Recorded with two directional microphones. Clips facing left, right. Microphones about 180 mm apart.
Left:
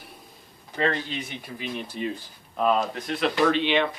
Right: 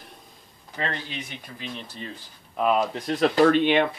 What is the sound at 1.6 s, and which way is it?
Speech, 10° left (ahead or behind).